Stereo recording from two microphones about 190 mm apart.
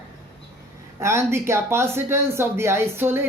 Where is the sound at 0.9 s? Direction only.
15° right (ahead or behind).